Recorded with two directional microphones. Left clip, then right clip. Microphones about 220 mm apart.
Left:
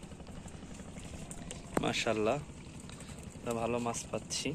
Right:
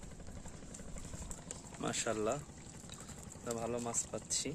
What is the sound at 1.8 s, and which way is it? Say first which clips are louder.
Speech: left 4 dB; 10° right (ahead or behind).